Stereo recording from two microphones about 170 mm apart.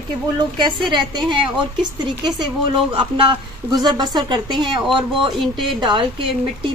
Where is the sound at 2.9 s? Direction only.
30° right (ahead or behind).